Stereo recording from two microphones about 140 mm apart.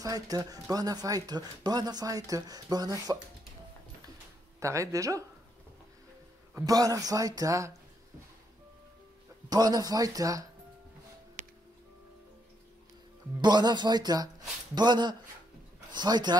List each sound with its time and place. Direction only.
0.0 s speech: 25° right (ahead or behind)
4.6 s speech: 20° right (ahead or behind)
6.5 s speech: 25° right (ahead or behind)
9.5 s speech: 30° right (ahead or behind)
13.4 s speech: 30° right (ahead or behind)